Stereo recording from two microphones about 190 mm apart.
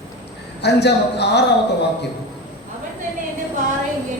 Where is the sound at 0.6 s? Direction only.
60° left (ahead or behind).